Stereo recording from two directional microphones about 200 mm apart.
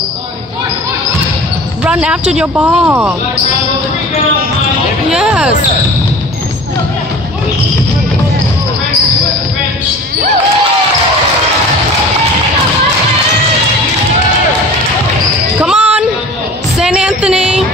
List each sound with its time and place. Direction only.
1.9 s speech: 5° right (ahead or behind)
5.1 s speech: 5° right (ahead or behind)
15.6 s music: 5° right (ahead or behind)